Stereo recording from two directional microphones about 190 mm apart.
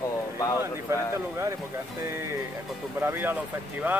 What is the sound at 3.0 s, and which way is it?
Speech, 10° right (ahead or behind).